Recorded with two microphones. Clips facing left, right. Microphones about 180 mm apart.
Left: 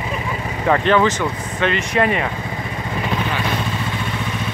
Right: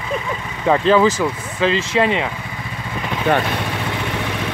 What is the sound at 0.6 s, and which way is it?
Speech, 10° right (ahead or behind).